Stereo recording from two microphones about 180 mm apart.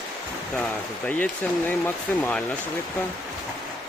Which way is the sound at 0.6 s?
10° left (ahead or behind).